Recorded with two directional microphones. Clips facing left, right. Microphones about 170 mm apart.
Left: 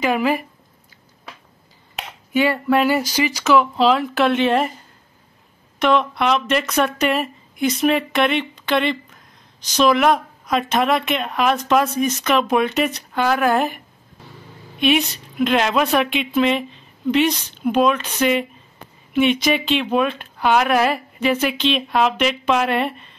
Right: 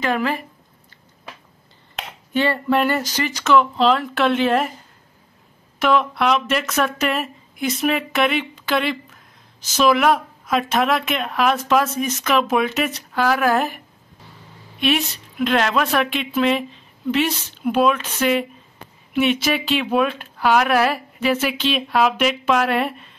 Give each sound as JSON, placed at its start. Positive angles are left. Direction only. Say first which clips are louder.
{"t": 0.0, "sound": "speech", "louder": "left 3 dB", "side_deg": 10}
{"t": 2.0, "sound": "speech", "louder": "left 2 dB", "side_deg": 10}
{"t": 5.8, "sound": "speech", "louder": "left 1 dB", "side_deg": -5}
{"t": 14.8, "sound": "speech", "louder": "left 3 dB", "side_deg": 0}